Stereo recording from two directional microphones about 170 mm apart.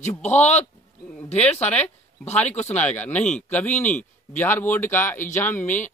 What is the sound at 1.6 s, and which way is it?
Speech, 5° left (ahead or behind).